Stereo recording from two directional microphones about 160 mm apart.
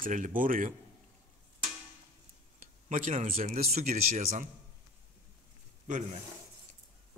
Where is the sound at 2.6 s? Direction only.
55° right (ahead or behind).